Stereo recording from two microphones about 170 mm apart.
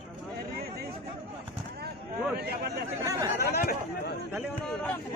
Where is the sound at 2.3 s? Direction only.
70° right (ahead or behind).